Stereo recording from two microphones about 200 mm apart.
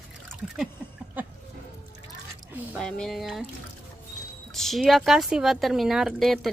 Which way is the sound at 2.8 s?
5° left (ahead or behind).